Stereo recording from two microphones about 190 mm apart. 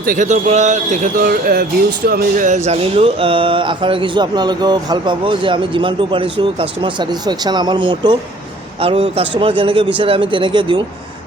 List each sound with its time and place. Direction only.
0.0 s speech: 45° right (ahead or behind); by 10.8 s 25° right (ahead or behind)